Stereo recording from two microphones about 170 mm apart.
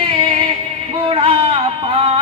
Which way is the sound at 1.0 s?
30° right (ahead or behind).